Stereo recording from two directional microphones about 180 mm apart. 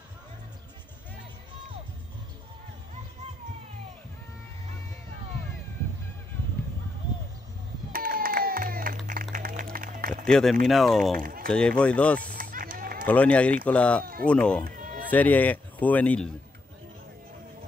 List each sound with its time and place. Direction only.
7.9 s music: 55° right (ahead or behind)
10.2 s speech: centre (ahead or behind)
12.2 s run: 50° right (ahead or behind)
13.0 s speech: 5° left (ahead or behind)
14.6 s run: 50° right (ahead or behind)
15.0 s speech: 10° left (ahead or behind)